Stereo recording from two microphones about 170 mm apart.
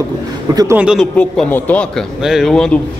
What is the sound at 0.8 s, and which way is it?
Speech, 5° right (ahead or behind).